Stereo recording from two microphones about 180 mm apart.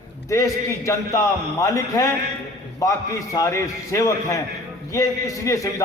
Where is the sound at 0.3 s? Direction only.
15° left (ahead or behind).